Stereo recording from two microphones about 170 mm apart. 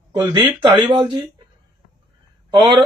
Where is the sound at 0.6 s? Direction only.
25° right (ahead or behind).